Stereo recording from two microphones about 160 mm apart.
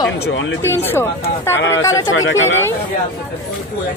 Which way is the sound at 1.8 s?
20° left (ahead or behind).